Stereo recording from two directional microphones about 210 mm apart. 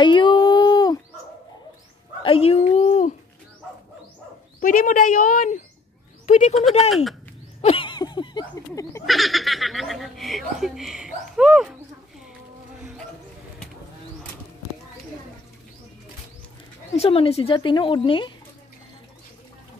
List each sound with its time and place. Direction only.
0.0 s a sound: 20° left (ahead or behind)
2.2 s speech: 25° left (ahead or behind)
4.6 s a woman's voice: 40° left (ahead or behind)
7.6 s a sound: 25° left (ahead or behind)
9.0 s speech: centre (ahead or behind)
16.9 s a woman's voice: 30° left (ahead or behind)